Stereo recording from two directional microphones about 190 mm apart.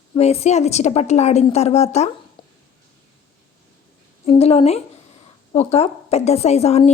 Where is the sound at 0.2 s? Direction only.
35° left (ahead or behind).